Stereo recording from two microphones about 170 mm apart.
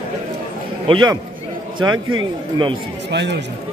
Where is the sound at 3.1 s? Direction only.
90° right.